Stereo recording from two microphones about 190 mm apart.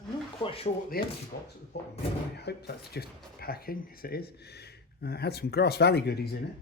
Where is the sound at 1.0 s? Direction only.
55° left (ahead or behind).